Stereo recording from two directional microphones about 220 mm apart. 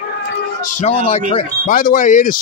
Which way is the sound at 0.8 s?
25° left (ahead or behind).